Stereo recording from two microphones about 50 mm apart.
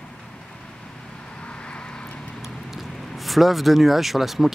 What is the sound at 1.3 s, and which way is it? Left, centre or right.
Vehicle, left.